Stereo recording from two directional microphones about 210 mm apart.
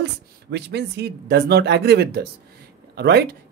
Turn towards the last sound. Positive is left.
turn(degrees=-50)  # may be behind; listen again after turning